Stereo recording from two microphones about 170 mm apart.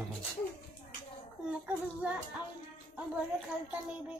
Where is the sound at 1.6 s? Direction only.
10° right (ahead or behind).